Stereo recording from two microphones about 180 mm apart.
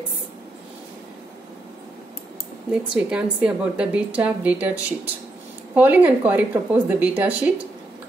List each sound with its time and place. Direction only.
2.7 s a woman's voice: 5° right (ahead or behind)